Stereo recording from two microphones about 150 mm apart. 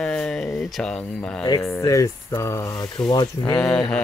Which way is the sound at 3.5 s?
5° left (ahead or behind).